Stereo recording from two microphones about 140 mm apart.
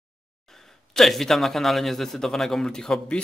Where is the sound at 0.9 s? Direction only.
Centre (ahead or behind).